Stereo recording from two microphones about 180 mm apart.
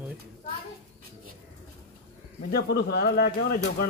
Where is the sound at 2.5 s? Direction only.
60° left (ahead or behind).